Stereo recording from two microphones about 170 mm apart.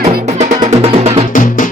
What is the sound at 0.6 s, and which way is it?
Music, 35° right (ahead or behind).